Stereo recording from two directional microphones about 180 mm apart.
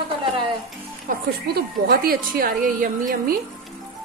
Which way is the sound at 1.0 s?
55° right (ahead or behind).